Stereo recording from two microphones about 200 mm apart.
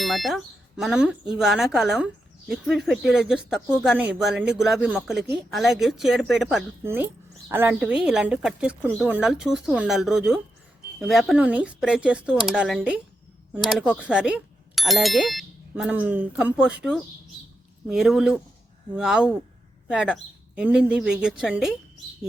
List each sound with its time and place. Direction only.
0.0 s a woman's voice: centre (ahead or behind)